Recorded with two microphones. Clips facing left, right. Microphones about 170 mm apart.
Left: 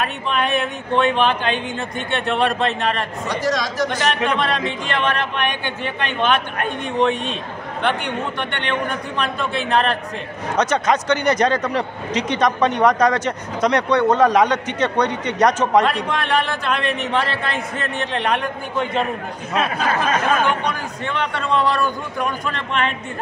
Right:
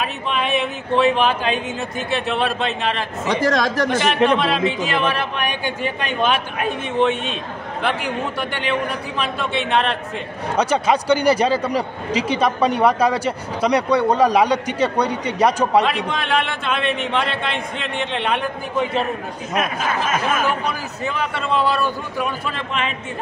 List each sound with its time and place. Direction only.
0.0 s speech: centre (ahead or behind)
3.4 s speech: 55° right (ahead or behind)
4.4 s a man's voice: centre (ahead or behind)
19.5 s speech: 30° left (ahead or behind)
20.4 s speech: 5° right (ahead or behind)